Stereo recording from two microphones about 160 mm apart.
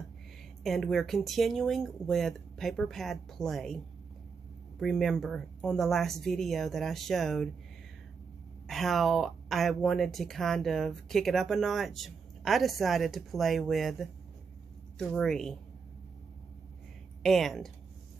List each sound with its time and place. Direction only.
0.7 s speech: centre (ahead or behind)
8.6 s speech: centre (ahead or behind)
17.2 s speech: centre (ahead or behind)